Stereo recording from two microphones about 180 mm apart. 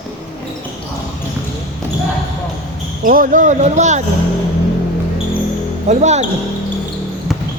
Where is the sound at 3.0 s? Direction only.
50° right (ahead or behind).